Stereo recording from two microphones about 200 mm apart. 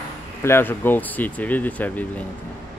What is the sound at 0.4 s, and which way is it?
Speech, 10° left (ahead or behind).